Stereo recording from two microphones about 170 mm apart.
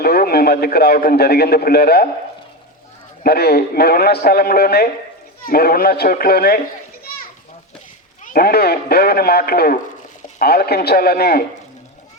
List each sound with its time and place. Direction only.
0.0 s a man's voice: 65° left (ahead or behind)
3.2 s a man's voice: 65° left (ahead or behind)
8.2 s a man's voice: 60° left (ahead or behind)